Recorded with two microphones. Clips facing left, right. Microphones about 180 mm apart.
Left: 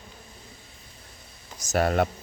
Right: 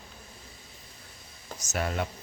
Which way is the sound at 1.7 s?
55° left (ahead or behind).